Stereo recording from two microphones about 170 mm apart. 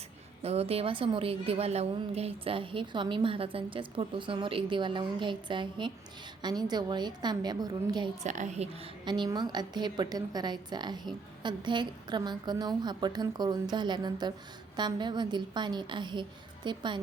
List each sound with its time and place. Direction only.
0.4 s a woman's voice: 35° right (ahead or behind)
8.2 s a woman's voice: 45° right (ahead or behind)
9.0 s a woman's voice: 25° right (ahead or behind)